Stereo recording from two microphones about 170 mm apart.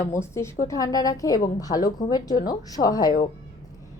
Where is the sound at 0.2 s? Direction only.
15° left (ahead or behind).